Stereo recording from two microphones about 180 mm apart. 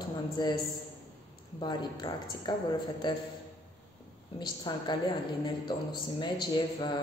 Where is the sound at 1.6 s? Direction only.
25° left (ahead or behind).